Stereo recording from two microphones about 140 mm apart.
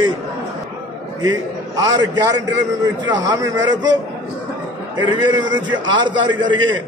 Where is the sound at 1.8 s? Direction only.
30° right (ahead or behind).